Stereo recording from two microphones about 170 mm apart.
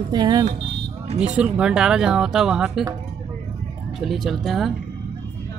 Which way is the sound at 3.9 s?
Centre (ahead or behind).